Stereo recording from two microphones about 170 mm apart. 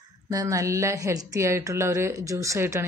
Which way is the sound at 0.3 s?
20° right (ahead or behind).